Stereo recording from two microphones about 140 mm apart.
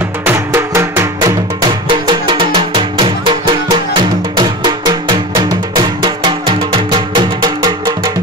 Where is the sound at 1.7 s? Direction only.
35° right (ahead or behind).